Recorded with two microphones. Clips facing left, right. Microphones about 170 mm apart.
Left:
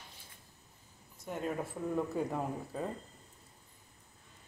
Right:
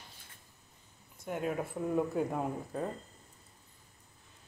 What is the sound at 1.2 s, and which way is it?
Speech, 5° right (ahead or behind).